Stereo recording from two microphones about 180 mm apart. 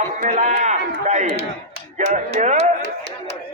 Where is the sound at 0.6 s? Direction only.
40° right (ahead or behind).